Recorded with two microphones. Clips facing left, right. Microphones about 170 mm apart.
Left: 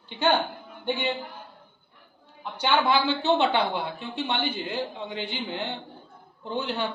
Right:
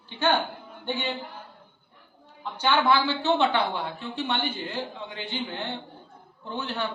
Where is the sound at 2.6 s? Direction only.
15° left (ahead or behind).